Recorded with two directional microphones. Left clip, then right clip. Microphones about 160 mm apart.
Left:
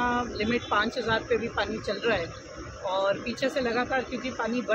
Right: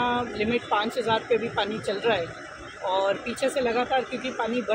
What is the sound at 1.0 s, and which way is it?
Speech, 35° left (ahead or behind).